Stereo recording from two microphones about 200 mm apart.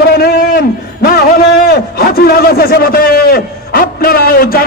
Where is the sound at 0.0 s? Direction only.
50° left (ahead or behind).